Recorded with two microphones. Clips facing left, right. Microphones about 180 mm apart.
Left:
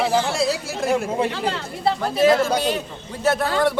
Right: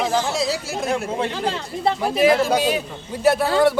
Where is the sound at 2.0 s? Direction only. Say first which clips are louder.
Even; 15° right (ahead or behind).